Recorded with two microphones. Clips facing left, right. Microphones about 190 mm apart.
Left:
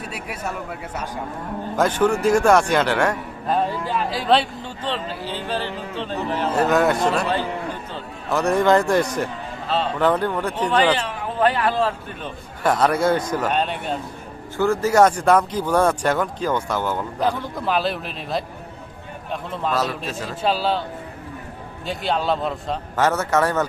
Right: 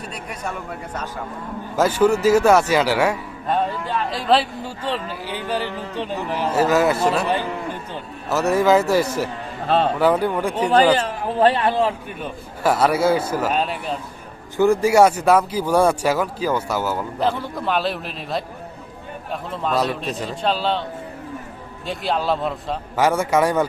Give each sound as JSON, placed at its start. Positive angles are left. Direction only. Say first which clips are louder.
{"t": 0.1, "sound": "a man's voice", "louder": "even", "side_deg": 5}
{"t": 1.7, "sound": "a man's voice", "louder": "right 2 dB", "side_deg": -5}
{"t": 8.3, "sound": "a man's voice", "louder": "right 1 dB", "side_deg": -5}
{"t": 9.6, "sound": "speech", "louder": "right 5 dB", "side_deg": -50}
{"t": 10.0, "sound": "speech", "louder": "right 2 dB", "side_deg": -10}
{"t": 11.3, "sound": "speech", "louder": "right 2 dB", "side_deg": -30}
{"t": 14.5, "sound": "a man's voice", "louder": "right 3 dB", "side_deg": -15}
{"t": 21.8, "sound": "a man's voice", "louder": "even", "side_deg": 0}